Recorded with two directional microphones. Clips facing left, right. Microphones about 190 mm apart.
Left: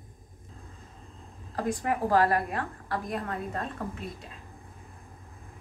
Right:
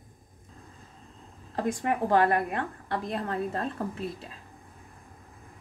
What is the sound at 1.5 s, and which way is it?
A woman's voice, 25° right (ahead or behind).